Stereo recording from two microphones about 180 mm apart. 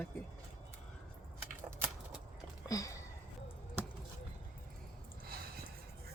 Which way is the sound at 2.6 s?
20° left (ahead or behind).